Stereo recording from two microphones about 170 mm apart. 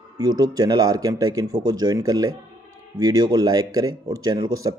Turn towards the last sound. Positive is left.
turn(degrees=-20)  # may be behind; listen again after turning